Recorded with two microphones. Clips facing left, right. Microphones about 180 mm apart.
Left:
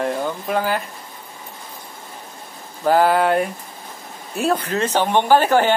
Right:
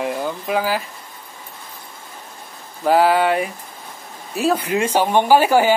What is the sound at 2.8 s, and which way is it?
Speech, centre (ahead or behind).